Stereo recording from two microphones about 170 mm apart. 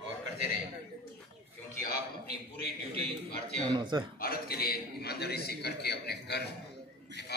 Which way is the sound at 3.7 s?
25° right (ahead or behind).